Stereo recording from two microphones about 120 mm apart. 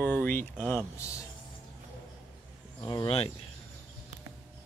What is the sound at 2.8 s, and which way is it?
Speech, 40° left (ahead or behind).